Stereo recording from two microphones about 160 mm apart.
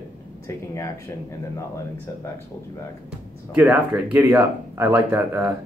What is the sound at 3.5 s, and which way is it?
Speech, 10° right (ahead or behind).